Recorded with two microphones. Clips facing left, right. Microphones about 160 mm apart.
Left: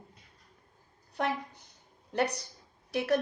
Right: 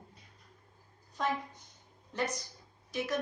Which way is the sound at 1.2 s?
65° left (ahead or behind).